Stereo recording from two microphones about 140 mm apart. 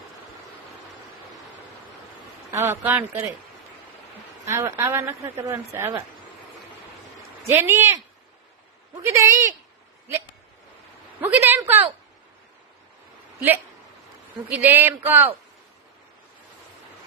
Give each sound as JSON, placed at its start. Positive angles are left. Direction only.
{"t": 2.5, "sound": "speech", "side_deg": -20}
{"t": 4.4, "sound": "speech", "side_deg": -20}
{"t": 7.4, "sound": "speech", "side_deg": -15}
{"t": 9.0, "sound": "speech", "side_deg": -20}
{"t": 11.2, "sound": "speech", "side_deg": -15}
{"t": 14.5, "sound": "speech", "side_deg": -15}